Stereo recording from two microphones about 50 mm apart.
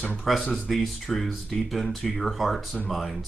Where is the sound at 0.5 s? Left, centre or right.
Centre.